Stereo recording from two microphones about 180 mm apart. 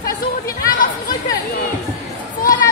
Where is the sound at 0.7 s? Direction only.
55° left (ahead or behind).